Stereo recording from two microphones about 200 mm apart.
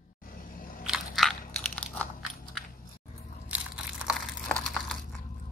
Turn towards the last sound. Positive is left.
turn(degrees=5)  # may be behind; listen again after turning